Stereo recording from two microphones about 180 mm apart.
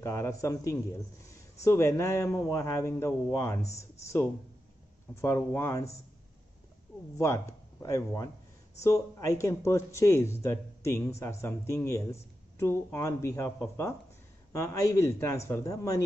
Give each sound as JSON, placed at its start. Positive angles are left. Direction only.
{"t": 0.0, "sound": "a man's voice", "side_deg": 15}
{"t": 5.1, "sound": "a man's voice", "side_deg": 15}
{"t": 7.2, "sound": "a man's voice", "side_deg": 15}
{"t": 14.5, "sound": "a man's voice", "side_deg": 15}